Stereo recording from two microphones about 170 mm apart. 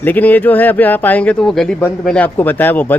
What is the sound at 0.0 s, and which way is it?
A man's voice, 10° left (ahead or behind).